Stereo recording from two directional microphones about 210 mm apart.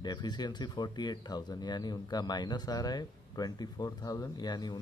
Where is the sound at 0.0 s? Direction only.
20° left (ahead or behind).